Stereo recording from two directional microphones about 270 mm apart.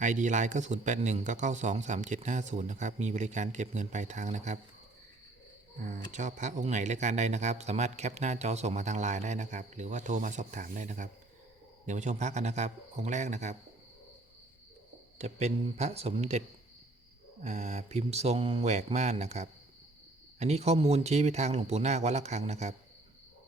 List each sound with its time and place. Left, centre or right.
0.0 s speech: right
6.1 s speech: right
15.2 s speech: right
17.4 s speech: right